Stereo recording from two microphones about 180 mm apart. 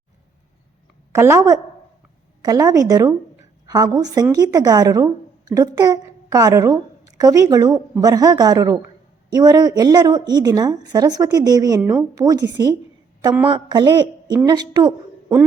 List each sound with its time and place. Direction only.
1.1 s a woman's voice: 15° right (ahead or behind)